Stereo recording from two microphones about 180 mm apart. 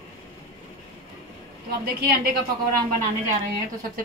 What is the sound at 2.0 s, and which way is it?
Speech, 60° right (ahead or behind).